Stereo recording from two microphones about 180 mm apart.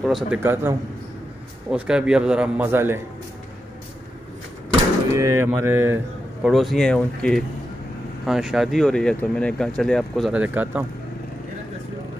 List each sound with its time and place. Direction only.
0.0 s speech: centre (ahead or behind)
0.4 s speech: 10° right (ahead or behind)
5.1 s speech: 15° right (ahead or behind)
6.4 s speech: centre (ahead or behind)